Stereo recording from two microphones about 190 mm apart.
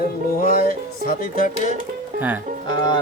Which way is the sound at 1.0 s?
45° left (ahead or behind).